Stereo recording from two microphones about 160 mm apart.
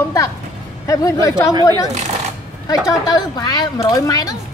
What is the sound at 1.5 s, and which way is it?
Speech, 25° right (ahead or behind).